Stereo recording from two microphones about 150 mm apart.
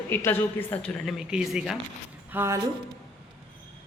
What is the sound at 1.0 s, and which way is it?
Speech, centre (ahead or behind).